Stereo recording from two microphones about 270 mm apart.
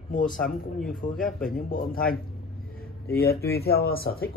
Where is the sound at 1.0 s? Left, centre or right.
Left.